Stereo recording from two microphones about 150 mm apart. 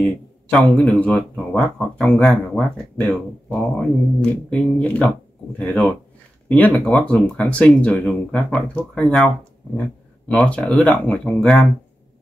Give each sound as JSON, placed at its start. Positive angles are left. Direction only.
{"t": 0.5, "sound": "speech", "side_deg": 5}
{"t": 6.5, "sound": "speech", "side_deg": 10}